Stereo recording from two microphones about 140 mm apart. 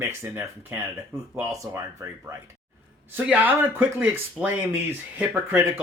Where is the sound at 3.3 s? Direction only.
10° right (ahead or behind).